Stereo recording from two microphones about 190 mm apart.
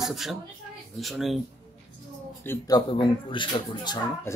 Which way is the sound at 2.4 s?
15° left (ahead or behind).